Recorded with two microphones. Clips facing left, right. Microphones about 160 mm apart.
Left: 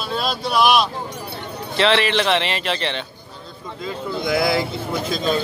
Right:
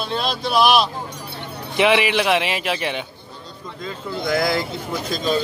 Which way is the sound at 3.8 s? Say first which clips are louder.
Left 1 dB; 10° left (ahead or behind).